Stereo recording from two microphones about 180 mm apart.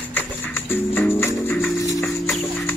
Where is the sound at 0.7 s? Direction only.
10° left (ahead or behind).